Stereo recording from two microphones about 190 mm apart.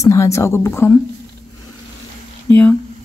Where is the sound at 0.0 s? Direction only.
15° left (ahead or behind).